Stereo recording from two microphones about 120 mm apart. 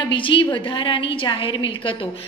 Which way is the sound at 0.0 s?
45° left (ahead or behind).